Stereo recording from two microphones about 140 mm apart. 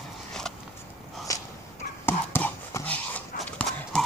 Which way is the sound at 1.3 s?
25° left (ahead or behind).